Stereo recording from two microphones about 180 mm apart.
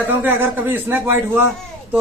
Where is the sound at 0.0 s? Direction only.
10° right (ahead or behind).